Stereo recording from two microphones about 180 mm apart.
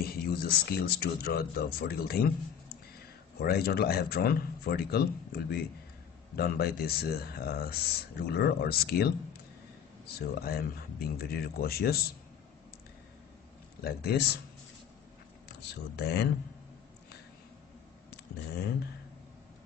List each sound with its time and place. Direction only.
0.0 s speech: 60° left (ahead or behind)
3.3 s speech: 60° left (ahead or behind)
13.8 s speech: 60° left (ahead or behind)
15.4 s speech: 65° left (ahead or behind)